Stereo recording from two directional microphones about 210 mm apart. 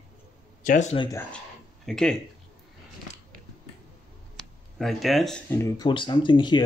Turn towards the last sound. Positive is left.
turn(degrees=20)  # may be behind; listen again after turning